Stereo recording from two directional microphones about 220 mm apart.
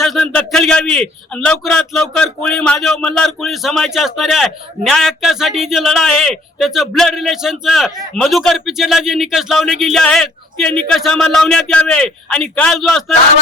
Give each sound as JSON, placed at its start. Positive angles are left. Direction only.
{"t": 0.0, "sound": "a man's voice", "side_deg": 0}